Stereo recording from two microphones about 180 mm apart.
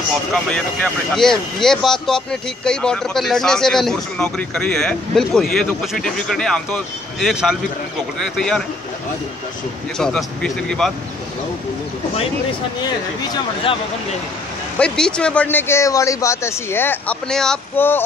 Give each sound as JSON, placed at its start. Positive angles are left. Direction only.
{"t": 0.3, "sound": "speech", "side_deg": 5}
{"t": 9.9, "sound": "speech", "side_deg": 5}
{"t": 12.8, "sound": "speech", "side_deg": 25}
{"t": 14.8, "sound": "speech", "side_deg": 5}